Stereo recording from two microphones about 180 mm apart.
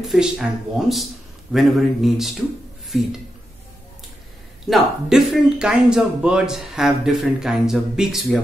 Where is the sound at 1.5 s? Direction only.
Centre (ahead or behind).